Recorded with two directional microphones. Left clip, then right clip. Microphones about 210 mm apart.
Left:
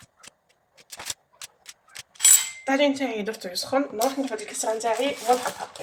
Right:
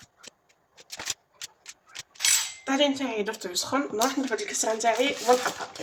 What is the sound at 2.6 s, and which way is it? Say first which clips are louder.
Speech: left 3 dB; 5° right (ahead or behind).